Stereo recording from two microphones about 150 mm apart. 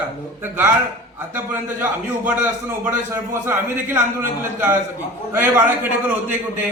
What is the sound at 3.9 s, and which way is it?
A man's voice, 15° right (ahead or behind).